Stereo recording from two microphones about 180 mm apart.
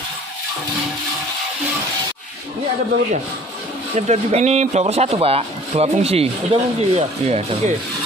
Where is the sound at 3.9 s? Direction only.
40° right (ahead or behind).